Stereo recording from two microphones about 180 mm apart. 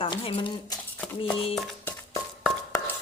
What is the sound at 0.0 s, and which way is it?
Speech, 30° left (ahead or behind).